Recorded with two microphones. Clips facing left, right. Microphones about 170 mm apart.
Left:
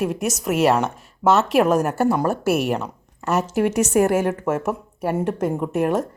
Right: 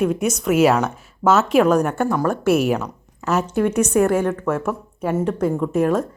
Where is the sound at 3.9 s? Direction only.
25° left (ahead or behind).